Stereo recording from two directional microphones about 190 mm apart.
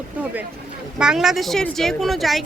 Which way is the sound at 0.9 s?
Centre (ahead or behind).